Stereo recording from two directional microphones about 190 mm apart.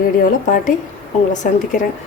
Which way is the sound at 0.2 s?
45° left (ahead or behind).